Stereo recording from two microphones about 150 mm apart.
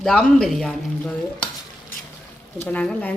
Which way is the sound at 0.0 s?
5° left (ahead or behind).